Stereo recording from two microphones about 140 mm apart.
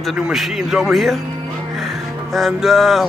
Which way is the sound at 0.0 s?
Centre (ahead or behind).